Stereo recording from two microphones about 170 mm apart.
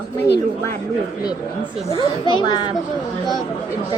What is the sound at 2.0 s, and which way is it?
Speech, 30° left (ahead or behind).